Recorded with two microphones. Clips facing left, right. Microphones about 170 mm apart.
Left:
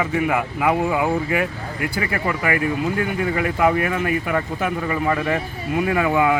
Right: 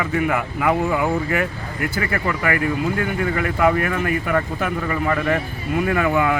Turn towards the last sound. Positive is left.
turn(degrees=15)  # may be behind; listen again after turning